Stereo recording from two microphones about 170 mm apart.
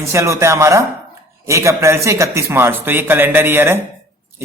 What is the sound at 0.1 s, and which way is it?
A man's voice, 15° right (ahead or behind).